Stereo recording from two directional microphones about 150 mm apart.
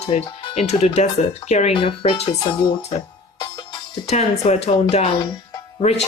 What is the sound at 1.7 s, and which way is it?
Speech, 40° left (ahead or behind).